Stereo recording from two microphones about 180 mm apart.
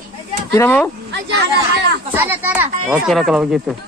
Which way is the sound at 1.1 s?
75° right (ahead or behind).